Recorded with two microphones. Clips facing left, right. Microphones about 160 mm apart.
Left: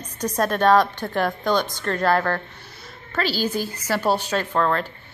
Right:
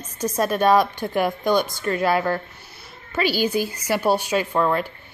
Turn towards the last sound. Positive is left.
turn(degrees=-10)  # may be behind; listen again after turning